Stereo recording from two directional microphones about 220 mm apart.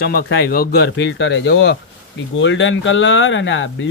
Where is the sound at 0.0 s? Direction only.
45° left (ahead or behind).